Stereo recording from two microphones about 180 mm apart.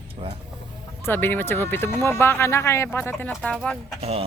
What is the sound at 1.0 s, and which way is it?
Speech, 10° left (ahead or behind).